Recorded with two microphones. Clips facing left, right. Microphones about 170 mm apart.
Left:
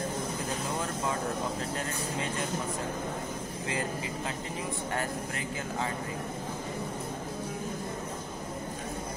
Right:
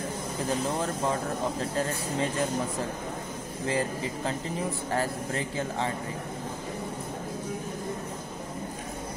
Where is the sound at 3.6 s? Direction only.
35° right (ahead or behind).